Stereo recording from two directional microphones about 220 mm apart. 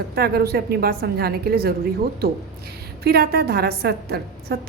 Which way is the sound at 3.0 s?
45° right (ahead or behind).